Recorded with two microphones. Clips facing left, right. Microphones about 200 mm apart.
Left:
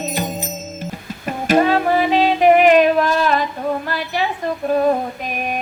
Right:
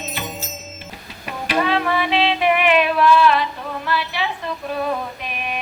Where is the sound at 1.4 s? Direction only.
45° left (ahead or behind).